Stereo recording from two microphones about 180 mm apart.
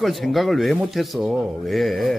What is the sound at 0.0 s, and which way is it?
Speech, centre (ahead or behind).